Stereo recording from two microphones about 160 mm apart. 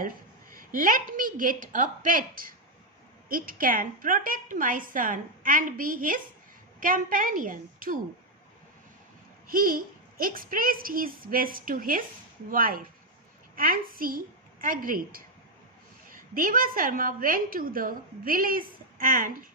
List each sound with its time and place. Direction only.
0.5 s a woman's voice: 60° right (ahead or behind)
9.5 s a woman's voice: 60° right (ahead or behind)